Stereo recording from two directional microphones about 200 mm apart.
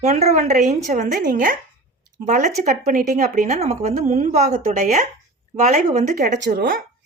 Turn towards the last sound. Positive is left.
turn(degrees=-45)  # may be behind; listen again after turning